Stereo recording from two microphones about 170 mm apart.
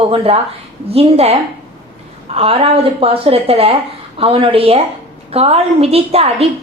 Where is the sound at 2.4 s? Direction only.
35° right (ahead or behind).